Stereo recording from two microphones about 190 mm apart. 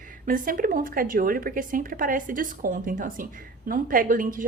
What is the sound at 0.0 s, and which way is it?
A woman's voice, 45° right (ahead or behind).